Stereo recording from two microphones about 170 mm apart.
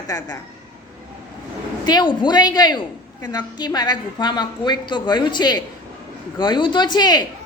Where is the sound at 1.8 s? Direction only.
25° left (ahead or behind).